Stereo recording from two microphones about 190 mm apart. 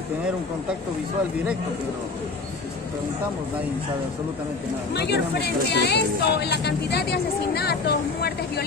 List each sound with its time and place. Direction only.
4.9 s speech: 60° left (ahead or behind)